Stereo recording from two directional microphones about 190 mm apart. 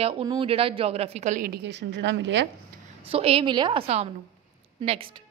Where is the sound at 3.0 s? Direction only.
30° right (ahead or behind).